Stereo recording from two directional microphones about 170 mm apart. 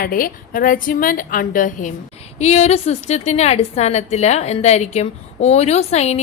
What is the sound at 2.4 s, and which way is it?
A woman's voice, 40° left (ahead or behind).